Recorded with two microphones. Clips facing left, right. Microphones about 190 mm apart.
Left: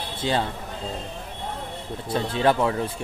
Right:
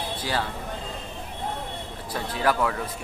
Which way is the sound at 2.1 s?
25° left (ahead or behind).